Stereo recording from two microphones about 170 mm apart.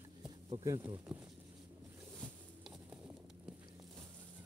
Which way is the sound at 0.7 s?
15° right (ahead or behind).